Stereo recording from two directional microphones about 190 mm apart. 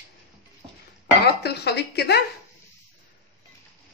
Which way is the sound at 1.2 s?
60° left (ahead or behind).